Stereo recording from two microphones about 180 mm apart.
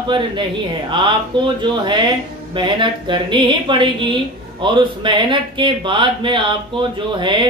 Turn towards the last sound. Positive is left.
turn(degrees=-25)  # may be behind; listen again after turning